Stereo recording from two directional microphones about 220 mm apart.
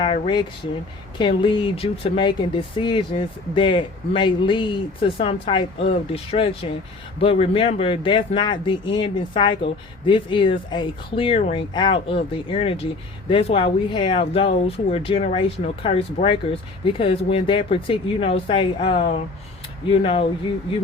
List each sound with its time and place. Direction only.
0.0 s speech: 20° left (ahead or behind)